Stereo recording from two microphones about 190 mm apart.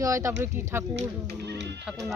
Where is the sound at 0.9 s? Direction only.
65° right (ahead or behind).